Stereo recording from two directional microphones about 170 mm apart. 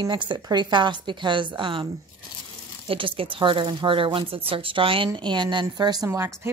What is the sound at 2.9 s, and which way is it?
Speech, 30° right (ahead or behind).